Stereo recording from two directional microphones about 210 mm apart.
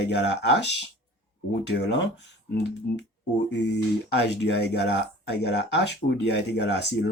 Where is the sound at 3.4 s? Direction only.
55° left (ahead or behind).